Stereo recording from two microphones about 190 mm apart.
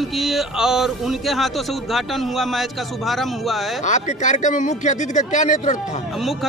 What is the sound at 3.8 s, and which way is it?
A man's voice, 40° left (ahead or behind).